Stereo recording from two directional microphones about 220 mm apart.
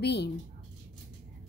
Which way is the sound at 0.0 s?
50° left (ahead or behind).